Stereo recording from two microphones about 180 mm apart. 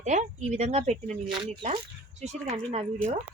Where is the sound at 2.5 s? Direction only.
35° right (ahead or behind).